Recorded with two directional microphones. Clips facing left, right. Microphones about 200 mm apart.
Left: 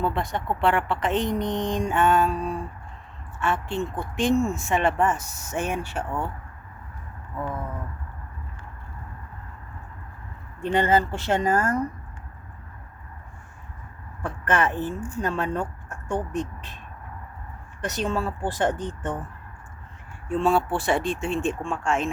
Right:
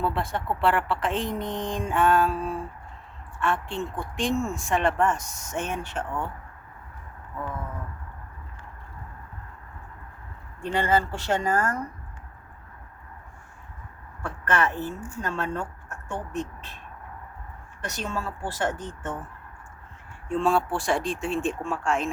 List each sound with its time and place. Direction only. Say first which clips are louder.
0.0 s speech: left 1 dB; centre (ahead or behind)
10.6 s speech: left 3 dB; 20° left (ahead or behind)
14.2 s speech: left 2 dB; 20° left (ahead or behind)
17.8 s speech: left 5 dB; 20° left (ahead or behind)
20.2 s speech: left 2 dB; 5° left (ahead or behind)